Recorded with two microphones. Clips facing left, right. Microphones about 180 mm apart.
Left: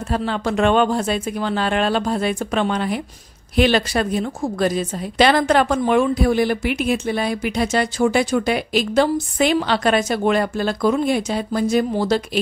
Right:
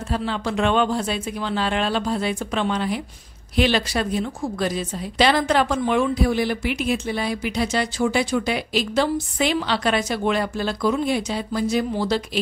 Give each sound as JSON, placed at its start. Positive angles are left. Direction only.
{"t": 0.1, "sound": "a woman's voice", "side_deg": 50}